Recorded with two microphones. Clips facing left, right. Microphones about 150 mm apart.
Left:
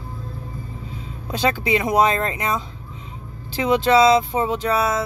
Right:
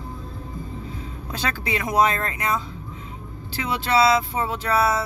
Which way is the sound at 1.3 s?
20° left (ahead or behind).